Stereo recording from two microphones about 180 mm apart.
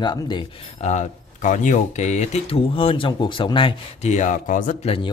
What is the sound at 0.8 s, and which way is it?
Speech, 40° left (ahead or behind).